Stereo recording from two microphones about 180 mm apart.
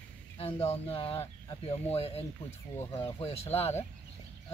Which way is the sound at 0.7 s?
30° left (ahead or behind).